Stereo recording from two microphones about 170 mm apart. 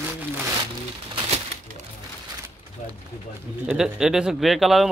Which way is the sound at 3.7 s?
5° right (ahead or behind).